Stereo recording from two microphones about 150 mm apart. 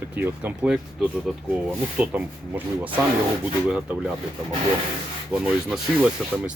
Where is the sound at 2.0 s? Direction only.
10° right (ahead or behind).